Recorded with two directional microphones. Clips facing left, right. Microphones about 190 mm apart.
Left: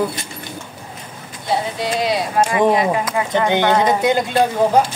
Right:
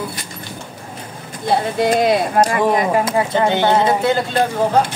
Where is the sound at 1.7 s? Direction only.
50° right (ahead or behind).